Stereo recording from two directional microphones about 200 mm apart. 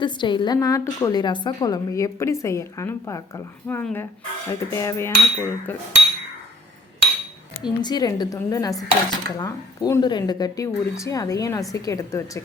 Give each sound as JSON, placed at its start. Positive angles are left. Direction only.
{"t": 0.0, "sound": "a woman's voice", "side_deg": 25}
{"t": 7.6, "sound": "a woman's voice", "side_deg": 20}